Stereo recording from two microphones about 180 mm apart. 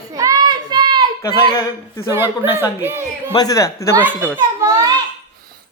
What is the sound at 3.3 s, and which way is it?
Speech, 20° left (ahead or behind).